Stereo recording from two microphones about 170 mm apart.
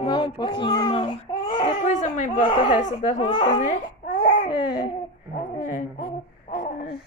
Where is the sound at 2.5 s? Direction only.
30° left (ahead or behind).